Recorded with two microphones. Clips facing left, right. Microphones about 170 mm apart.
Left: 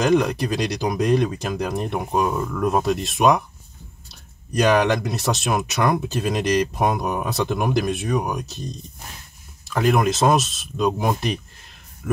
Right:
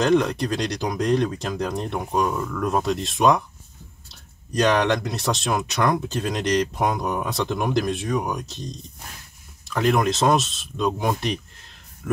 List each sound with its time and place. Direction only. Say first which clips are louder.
0.0 s speech: left 1 dB; 5° left (ahead or behind)
4.6 s speech: left 2 dB; 5° left (ahead or behind)
8.1 s speech: left 1 dB; 15° left (ahead or behind)
9.7 s speech: left 1 dB; 5° left (ahead or behind)